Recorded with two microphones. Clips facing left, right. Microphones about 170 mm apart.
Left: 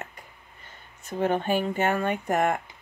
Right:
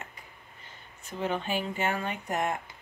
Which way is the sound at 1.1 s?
50° left (ahead or behind).